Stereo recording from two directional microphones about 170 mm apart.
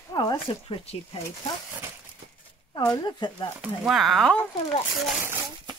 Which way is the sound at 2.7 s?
25° left (ahead or behind).